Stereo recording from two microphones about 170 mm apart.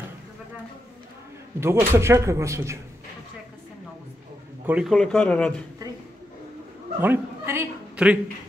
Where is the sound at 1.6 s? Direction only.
15° right (ahead or behind).